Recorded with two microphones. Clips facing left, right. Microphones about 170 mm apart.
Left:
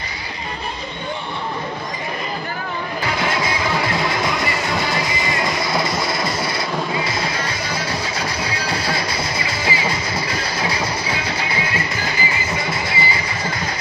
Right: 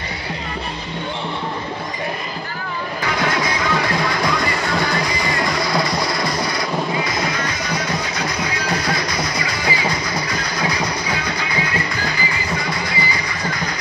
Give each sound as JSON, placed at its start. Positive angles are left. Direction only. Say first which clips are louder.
{"t": 3.2, "sound": "music", "louder": "right 2 dB", "side_deg": 25}